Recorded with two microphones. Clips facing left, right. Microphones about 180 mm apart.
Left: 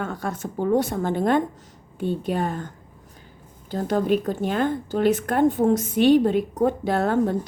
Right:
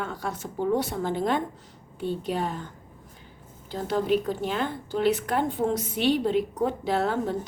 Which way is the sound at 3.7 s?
45° left (ahead or behind).